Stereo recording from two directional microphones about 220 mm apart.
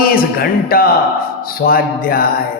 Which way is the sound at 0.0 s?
40° left (ahead or behind).